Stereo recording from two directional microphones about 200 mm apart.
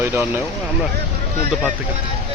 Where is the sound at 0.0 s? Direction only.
10° right (ahead or behind).